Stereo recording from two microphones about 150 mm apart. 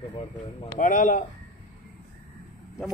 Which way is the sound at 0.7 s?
60° left (ahead or behind).